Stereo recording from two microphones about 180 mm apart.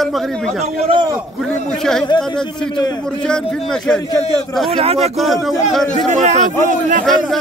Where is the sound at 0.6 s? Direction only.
30° right (ahead or behind).